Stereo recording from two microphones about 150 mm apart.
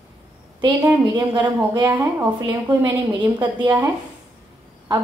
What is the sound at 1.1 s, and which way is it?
A woman's voice, 30° right (ahead or behind).